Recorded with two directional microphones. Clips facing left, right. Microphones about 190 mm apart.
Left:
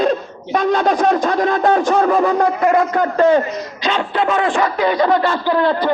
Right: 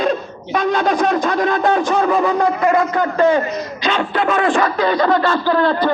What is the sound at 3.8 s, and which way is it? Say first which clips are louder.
Speech: even; 25° left (ahead or behind).